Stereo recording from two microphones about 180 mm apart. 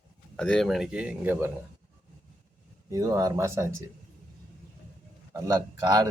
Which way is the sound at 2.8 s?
20° right (ahead or behind).